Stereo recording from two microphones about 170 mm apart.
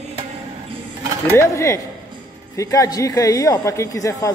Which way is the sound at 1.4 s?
15° left (ahead or behind).